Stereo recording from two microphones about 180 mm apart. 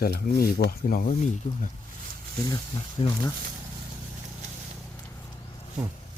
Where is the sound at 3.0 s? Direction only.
25° left (ahead or behind).